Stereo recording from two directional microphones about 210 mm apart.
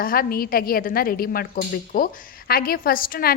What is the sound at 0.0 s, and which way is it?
A woman's voice, 45° left (ahead or behind).